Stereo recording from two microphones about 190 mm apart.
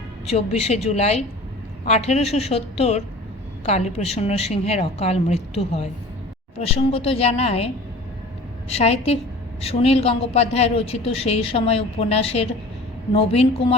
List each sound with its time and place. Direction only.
0.3 s a woman's voice: 35° left (ahead or behind)
8.7 s a woman's voice: 35° left (ahead or behind)